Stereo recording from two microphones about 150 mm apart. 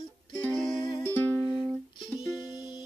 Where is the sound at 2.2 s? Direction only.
30° left (ahead or behind).